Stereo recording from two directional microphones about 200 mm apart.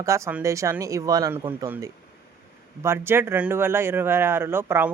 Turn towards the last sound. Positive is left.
turn(degrees=-10)  # may be behind; listen again after turning